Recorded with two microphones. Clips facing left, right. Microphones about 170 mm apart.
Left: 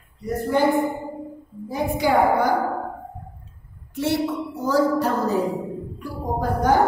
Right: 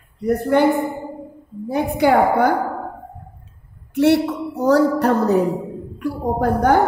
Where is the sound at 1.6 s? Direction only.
65° right (ahead or behind).